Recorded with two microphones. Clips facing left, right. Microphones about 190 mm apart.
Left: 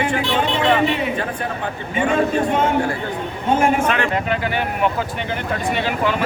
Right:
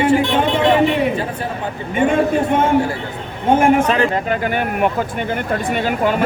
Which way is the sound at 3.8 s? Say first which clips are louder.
Right 3 dB; 35° right (ahead or behind).